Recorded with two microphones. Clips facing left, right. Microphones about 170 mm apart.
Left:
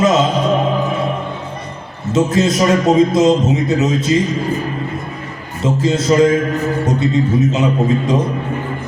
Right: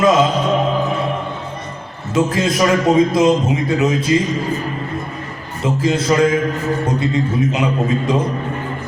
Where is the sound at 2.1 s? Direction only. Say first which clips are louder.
Left 3 dB; 25° left (ahead or behind).